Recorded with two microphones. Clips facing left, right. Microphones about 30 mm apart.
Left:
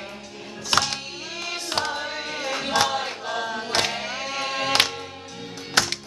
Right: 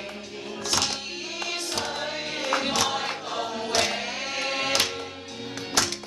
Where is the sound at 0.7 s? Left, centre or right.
Left.